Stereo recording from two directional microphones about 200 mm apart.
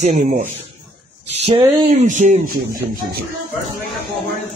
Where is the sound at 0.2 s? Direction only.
40° right (ahead or behind).